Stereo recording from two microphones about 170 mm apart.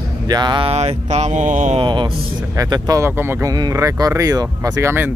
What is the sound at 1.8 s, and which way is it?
Speech, 30° right (ahead or behind).